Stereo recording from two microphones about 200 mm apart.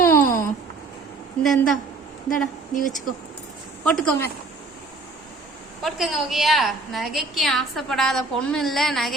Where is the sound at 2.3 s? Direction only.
40° left (ahead or behind).